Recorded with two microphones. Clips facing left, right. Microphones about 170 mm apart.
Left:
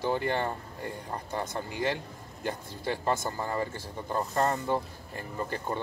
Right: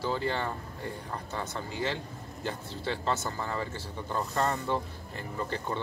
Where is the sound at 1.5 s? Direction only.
50° left (ahead or behind).